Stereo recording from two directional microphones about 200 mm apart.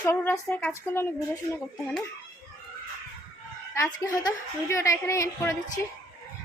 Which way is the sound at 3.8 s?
15° left (ahead or behind).